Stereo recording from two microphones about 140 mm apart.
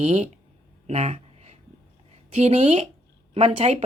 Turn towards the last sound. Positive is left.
turn(degrees=-45)  # may be behind; listen again after turning